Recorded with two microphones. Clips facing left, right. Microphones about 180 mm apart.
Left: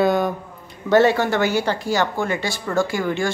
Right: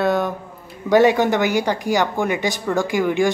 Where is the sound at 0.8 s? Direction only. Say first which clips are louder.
Right 2 dB; 15° right (ahead or behind).